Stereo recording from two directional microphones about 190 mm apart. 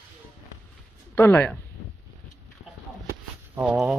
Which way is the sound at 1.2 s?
10° left (ahead or behind).